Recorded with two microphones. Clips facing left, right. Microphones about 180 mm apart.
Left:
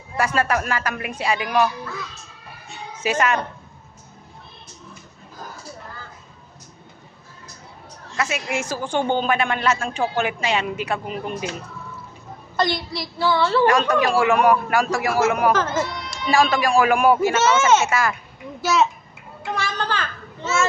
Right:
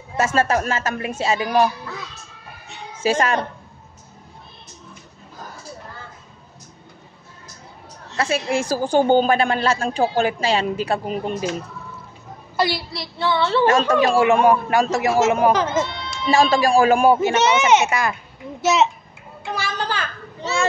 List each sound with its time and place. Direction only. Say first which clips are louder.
0.2 s speech: right 2 dB; 25° right (ahead or behind)
3.0 s speech: right 2 dB; 30° right (ahead or behind)
8.1 s a woman's voice: right 4 dB; 30° right (ahead or behind)
12.5 s a woman's voice: right 1 dB; 5° right (ahead or behind)
13.7 s speech: right 2 dB; 25° right (ahead or behind)
18.6 s a sound: right 2 dB; 20° right (ahead or behind)
19.5 s children playing: even; 5° right (ahead or behind)